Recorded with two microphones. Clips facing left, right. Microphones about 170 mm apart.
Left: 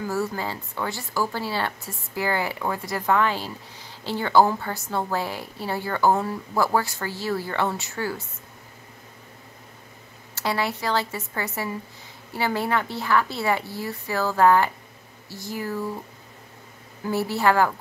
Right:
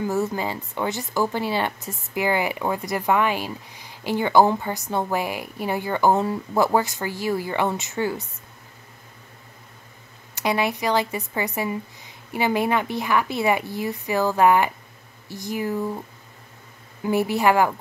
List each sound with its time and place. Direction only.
0.0 s speech: 20° right (ahead or behind)
10.3 s speech: 15° right (ahead or behind)
17.0 s speech: 15° right (ahead or behind)